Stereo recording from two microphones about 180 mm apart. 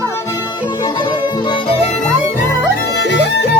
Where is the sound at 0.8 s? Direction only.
25° left (ahead or behind).